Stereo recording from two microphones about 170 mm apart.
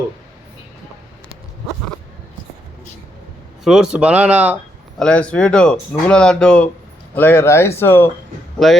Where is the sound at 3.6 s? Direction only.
5° right (ahead or behind).